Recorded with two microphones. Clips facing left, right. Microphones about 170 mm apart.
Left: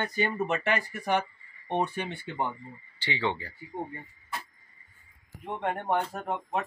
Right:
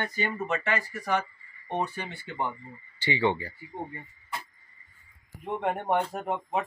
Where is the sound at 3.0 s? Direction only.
15° right (ahead or behind).